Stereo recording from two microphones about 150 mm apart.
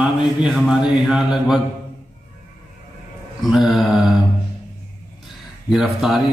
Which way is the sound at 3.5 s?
Centre (ahead or behind).